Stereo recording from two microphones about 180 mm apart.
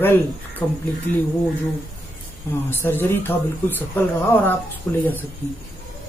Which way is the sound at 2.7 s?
10° left (ahead or behind).